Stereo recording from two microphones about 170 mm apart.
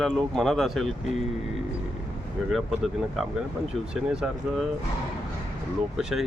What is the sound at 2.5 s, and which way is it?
Speech, centre (ahead or behind).